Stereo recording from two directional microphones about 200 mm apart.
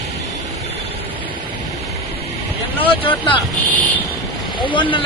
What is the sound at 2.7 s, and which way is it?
Speech, 25° left (ahead or behind).